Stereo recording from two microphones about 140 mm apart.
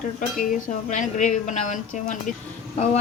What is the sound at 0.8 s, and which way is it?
A woman's voice, 60° left (ahead or behind).